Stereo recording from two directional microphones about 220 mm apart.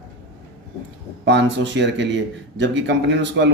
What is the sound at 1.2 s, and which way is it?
Speech, 55° right (ahead or behind).